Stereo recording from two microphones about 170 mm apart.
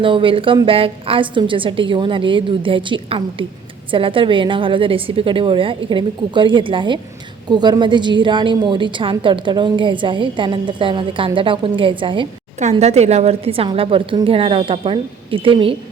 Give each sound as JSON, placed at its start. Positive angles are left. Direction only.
{"t": 0.0, "sound": "a woman's voice", "side_deg": -30}
{"t": 12.8, "sound": "a woman's voice", "side_deg": -40}